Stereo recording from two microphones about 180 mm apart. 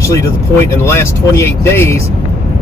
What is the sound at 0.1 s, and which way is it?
Speech, 15° left (ahead or behind).